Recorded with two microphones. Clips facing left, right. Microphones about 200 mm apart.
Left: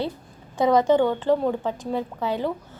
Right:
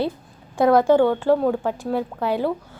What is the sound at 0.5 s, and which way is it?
A woman's voice, 10° right (ahead or behind).